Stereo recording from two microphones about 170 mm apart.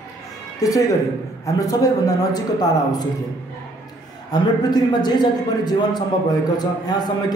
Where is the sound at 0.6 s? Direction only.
20° left (ahead or behind).